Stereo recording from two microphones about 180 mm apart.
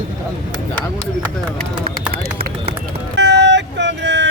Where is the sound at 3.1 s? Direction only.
75° right (ahead or behind).